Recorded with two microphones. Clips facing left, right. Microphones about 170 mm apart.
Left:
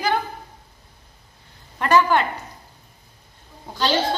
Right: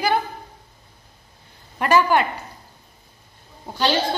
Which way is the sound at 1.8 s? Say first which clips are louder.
Even; 10° right (ahead or behind).